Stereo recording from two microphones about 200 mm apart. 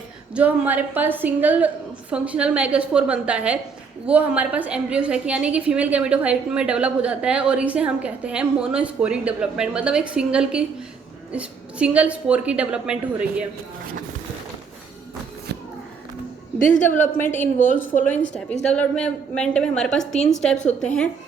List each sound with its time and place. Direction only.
0.3 s a woman's voice: 5° right (ahead or behind)
16.6 s a woman's voice: 40° left (ahead or behind)
16.9 s a woman's voice: 10° left (ahead or behind)